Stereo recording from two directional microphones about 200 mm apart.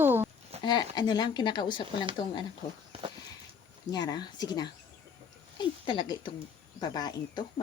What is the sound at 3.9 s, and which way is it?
Speech, 20° left (ahead or behind).